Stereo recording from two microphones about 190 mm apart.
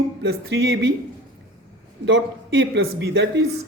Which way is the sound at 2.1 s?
65° right (ahead or behind).